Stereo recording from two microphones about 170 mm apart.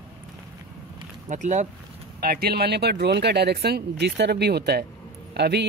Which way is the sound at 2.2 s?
65° right (ahead or behind).